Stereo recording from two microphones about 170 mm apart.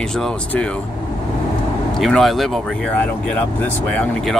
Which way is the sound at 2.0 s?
Centre (ahead or behind).